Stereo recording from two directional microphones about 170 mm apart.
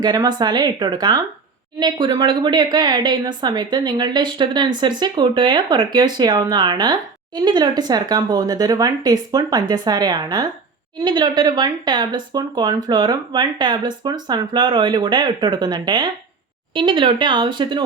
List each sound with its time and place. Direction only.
0.0 s speech: 25° right (ahead or behind)